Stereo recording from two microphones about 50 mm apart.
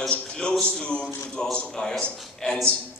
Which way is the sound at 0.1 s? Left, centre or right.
Left.